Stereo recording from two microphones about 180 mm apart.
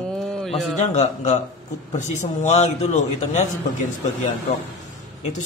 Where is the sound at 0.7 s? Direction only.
40° left (ahead or behind).